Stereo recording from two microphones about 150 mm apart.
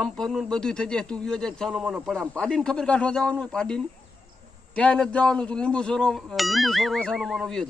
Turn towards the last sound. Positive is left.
turn(degrees=5)  # may be behind; listen again after turning